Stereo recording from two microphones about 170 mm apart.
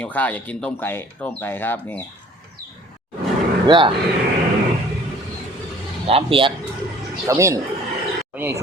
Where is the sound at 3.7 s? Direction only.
30° right (ahead or behind).